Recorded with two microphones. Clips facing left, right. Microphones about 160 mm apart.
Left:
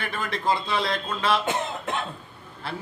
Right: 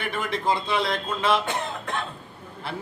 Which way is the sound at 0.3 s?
20° right (ahead or behind).